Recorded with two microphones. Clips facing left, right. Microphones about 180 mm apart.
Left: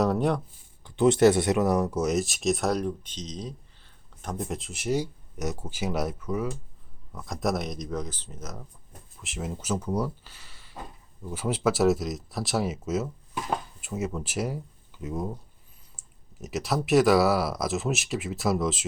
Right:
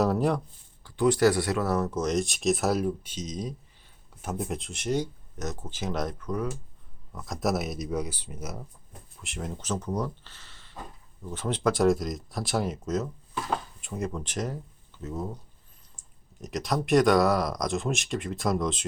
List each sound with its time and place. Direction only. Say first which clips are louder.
0.0 s speech: even; centre (ahead or behind)
0.9 s speech: left 3 dB; 25° left (ahead or behind); by 8.6 s 10° right (ahead or behind)
9.2 s speech: left 2 dB; 5° left (ahead or behind)